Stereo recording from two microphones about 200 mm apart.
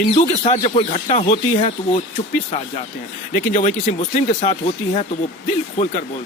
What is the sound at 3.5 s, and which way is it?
Speech, 35° left (ahead or behind).